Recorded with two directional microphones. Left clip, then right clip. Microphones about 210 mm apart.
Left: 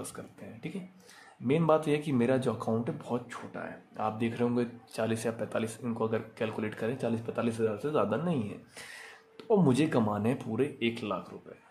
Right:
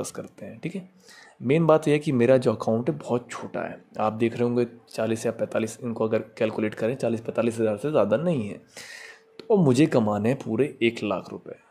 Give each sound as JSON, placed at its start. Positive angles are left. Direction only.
{"t": 0.0, "sound": "speech", "side_deg": -30}